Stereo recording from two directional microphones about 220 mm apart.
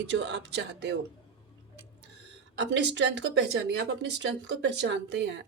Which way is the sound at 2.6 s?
55° right (ahead or behind).